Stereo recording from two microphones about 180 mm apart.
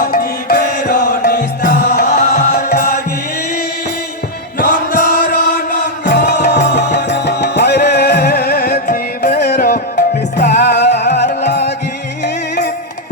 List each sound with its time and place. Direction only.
0.0 s music: 55° left (ahead or behind)
4.6 s chant: 60° left (ahead or behind)
6.1 s music: 65° left (ahead or behind)